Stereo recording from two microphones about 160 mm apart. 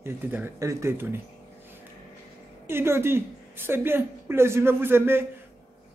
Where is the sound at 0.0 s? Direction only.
15° right (ahead or behind).